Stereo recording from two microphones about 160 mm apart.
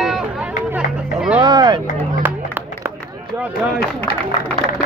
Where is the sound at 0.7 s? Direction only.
5° right (ahead or behind).